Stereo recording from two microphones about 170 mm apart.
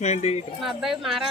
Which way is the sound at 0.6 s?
Centre (ahead or behind).